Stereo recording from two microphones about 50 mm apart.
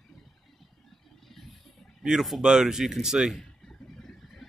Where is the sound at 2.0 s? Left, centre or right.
Centre.